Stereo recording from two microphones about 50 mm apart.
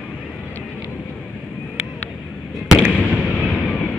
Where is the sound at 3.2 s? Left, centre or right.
Centre.